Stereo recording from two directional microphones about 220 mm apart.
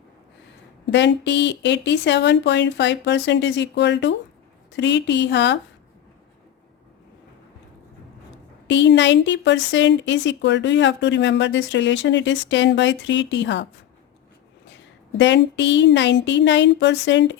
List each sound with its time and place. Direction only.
0.9 s speech: 50° left (ahead or behind)
8.6 s a woman's voice: 55° left (ahead or behind)
15.2 s speech: 55° left (ahead or behind)